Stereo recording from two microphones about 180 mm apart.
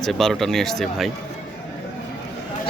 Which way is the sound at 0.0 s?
Centre (ahead or behind).